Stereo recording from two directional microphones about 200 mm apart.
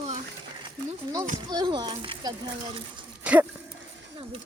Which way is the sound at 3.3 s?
5° right (ahead or behind).